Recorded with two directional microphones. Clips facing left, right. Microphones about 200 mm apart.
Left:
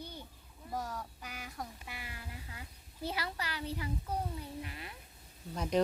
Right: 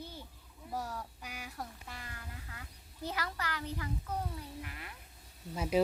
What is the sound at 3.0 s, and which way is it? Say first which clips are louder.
A child's voice: even; 10° left (ahead or behind).